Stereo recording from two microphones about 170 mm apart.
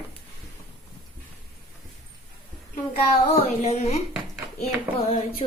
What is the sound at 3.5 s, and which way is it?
Speech, 40° left (ahead or behind).